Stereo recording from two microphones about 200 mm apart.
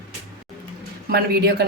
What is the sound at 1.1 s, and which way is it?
Speech, 55° right (ahead or behind).